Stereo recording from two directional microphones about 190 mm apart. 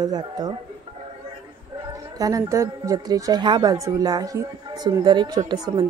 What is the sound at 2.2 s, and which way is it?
A woman's voice, 15° right (ahead or behind).